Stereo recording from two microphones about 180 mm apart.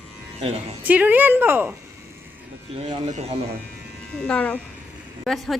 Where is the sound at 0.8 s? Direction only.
10° right (ahead or behind).